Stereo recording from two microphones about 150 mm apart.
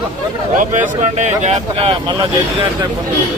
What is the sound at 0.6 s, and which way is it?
Speech, 55° right (ahead or behind).